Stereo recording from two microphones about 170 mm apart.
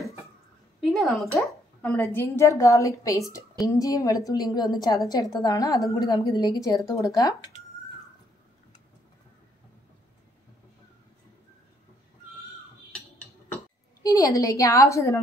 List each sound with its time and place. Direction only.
0.7 s a sound: centre (ahead or behind)
1.4 s a woman's voice: 5° left (ahead or behind)
14.0 s a woman's voice: 20° left (ahead or behind)